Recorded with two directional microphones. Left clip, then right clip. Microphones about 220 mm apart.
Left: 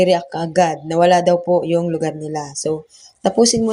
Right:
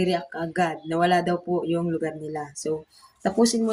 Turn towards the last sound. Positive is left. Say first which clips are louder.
# left 7 dB
turn(degrees=25)  # may be behind; listen again after turning